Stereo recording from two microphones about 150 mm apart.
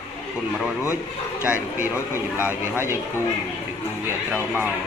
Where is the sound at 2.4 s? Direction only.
15° right (ahead or behind).